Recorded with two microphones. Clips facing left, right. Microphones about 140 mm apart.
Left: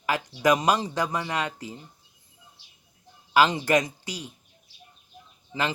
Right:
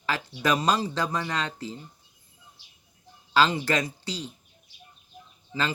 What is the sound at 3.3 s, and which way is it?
Speech, 15° left (ahead or behind).